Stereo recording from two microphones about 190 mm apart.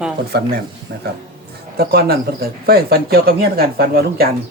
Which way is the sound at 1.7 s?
55° right (ahead or behind).